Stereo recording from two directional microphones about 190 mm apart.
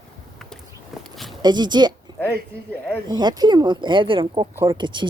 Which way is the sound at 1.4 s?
20° right (ahead or behind).